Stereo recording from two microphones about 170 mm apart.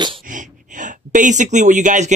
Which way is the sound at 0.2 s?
50° right (ahead or behind).